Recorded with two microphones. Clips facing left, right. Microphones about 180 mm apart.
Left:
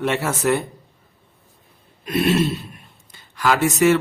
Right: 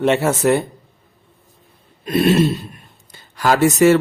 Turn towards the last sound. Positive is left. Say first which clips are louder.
# right 4 dB
turn(degrees=-35)  # may be behind; listen again after turning